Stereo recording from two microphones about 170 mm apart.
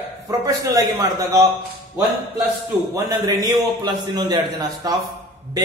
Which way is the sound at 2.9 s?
20° right (ahead or behind).